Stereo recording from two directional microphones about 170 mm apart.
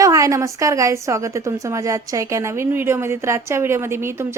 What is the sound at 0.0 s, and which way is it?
A woman's voice, 20° right (ahead or behind).